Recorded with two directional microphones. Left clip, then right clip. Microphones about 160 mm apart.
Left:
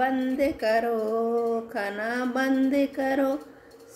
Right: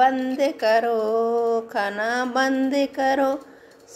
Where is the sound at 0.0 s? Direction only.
20° left (ahead or behind).